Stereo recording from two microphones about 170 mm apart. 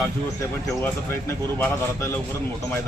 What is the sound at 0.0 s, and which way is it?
A man's voice, 15° left (ahead or behind).